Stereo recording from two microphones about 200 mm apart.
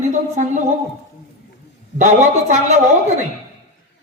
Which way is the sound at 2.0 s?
35° right (ahead or behind).